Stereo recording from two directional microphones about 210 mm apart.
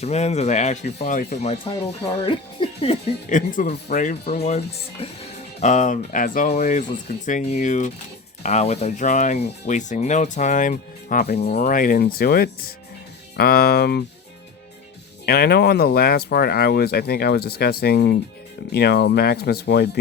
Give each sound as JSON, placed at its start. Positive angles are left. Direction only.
{"t": 0.0, "sound": "speech", "side_deg": 30}
{"t": 15.3, "sound": "speech", "side_deg": 50}